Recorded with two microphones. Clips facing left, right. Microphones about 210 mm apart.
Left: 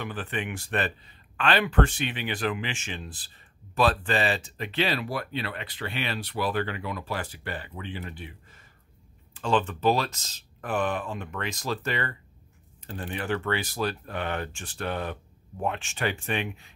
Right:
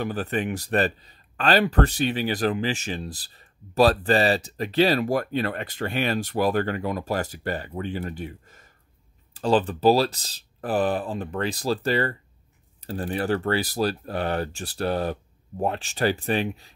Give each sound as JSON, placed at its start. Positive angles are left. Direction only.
{"t": 0.0, "sound": "speech", "side_deg": -40}